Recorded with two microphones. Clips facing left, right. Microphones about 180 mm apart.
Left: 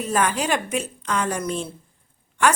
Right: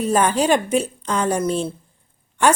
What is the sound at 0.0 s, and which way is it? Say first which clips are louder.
A woman's voice: right 5 dB; 30° right (ahead or behind).